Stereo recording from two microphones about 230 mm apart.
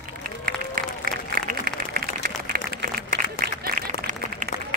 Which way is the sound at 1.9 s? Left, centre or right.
Right.